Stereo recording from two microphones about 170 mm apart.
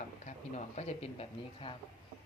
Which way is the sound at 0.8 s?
40° left (ahead or behind).